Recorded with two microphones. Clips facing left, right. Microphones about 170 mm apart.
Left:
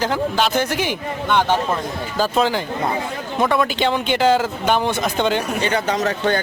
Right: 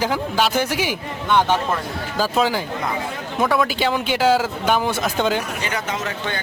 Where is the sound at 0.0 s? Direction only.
10° right (ahead or behind).